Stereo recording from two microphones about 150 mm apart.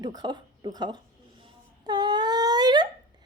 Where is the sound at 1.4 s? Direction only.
30° right (ahead or behind).